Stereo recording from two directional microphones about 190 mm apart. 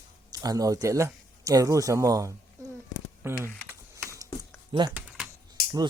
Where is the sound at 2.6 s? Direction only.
15° right (ahead or behind).